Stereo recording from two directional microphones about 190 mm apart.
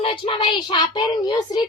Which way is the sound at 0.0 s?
25° left (ahead or behind).